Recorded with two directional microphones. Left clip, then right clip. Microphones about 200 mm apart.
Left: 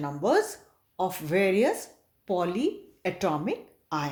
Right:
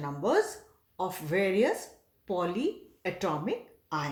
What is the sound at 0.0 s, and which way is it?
A woman's voice, 35° left (ahead or behind).